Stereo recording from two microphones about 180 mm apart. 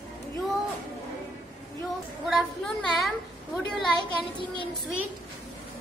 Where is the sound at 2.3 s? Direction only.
Centre (ahead or behind).